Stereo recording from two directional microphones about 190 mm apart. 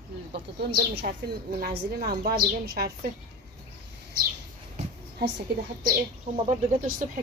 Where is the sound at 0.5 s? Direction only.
55° right (ahead or behind).